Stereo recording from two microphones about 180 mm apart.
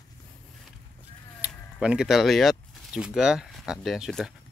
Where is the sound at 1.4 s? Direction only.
5° right (ahead or behind).